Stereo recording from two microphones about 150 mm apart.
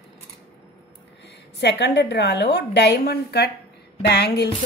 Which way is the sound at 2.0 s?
90° left.